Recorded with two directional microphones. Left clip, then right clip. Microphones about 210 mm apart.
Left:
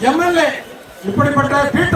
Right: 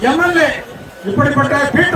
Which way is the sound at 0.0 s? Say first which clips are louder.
Right 1 dB; 35° left (ahead or behind).